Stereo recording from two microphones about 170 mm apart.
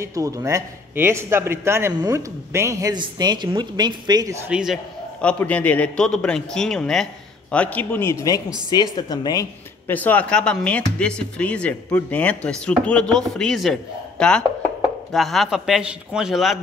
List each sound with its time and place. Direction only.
0.0 s a man's voice: 20° right (ahead or behind)
4.5 s a man's voice: 5° right (ahead or behind)
5.2 s a man's voice: 10° left (ahead or behind)